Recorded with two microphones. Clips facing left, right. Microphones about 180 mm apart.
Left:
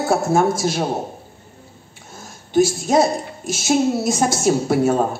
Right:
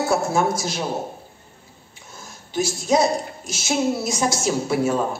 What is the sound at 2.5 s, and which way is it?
Music, 50° left (ahead or behind).